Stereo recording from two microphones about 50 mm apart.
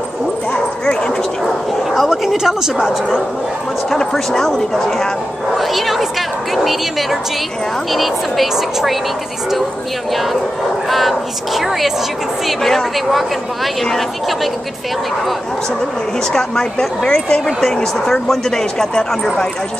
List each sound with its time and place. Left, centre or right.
0.5 s bow-wow: centre
1.4 s bow-wow: centre
3.9 s a woman's voice: centre
10.9 s speech: centre
16.3 s speech: centre